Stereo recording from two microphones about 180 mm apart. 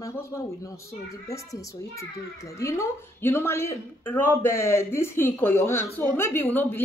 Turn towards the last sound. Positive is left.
turn(degrees=10)  # may be behind; listen again after turning